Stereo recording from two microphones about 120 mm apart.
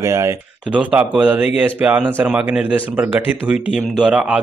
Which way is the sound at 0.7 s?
10° right (ahead or behind).